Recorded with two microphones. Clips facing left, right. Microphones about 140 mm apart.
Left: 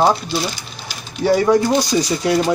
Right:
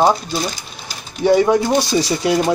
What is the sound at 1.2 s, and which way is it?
Speech, 20° right (ahead or behind).